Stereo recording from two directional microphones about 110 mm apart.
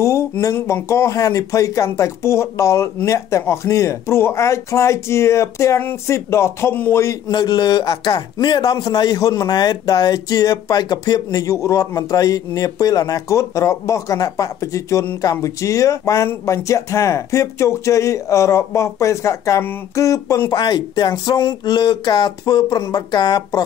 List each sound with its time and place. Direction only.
0.0 s speech: 25° left (ahead or behind)
7.2 s speech: 40° left (ahead or behind)